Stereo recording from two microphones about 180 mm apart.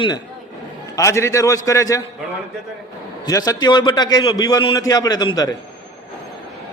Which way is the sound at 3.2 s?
20° left (ahead or behind).